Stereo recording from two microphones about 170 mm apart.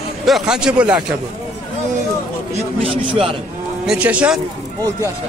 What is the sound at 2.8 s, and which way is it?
Speech, 30° right (ahead or behind).